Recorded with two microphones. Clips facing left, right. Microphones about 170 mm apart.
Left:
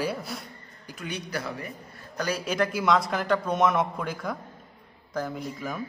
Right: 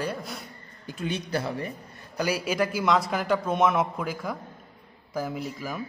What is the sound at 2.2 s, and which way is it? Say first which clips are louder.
A man's voice: right 1 dB; 10° right (ahead or behind).